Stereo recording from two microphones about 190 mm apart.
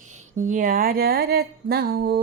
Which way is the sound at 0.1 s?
40° right (ahead or behind).